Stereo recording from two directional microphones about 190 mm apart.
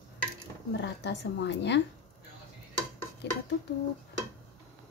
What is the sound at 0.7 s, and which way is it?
A woman's voice, 65° left (ahead or behind).